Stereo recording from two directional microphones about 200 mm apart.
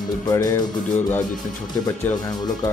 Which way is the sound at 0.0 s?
20° left (ahead or behind).